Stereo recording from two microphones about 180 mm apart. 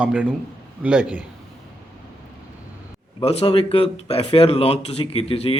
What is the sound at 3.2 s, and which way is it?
Speech, 35° left (ahead or behind).